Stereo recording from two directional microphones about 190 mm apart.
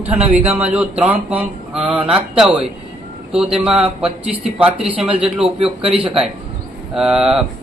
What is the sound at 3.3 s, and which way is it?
Speech, 5° right (ahead or behind).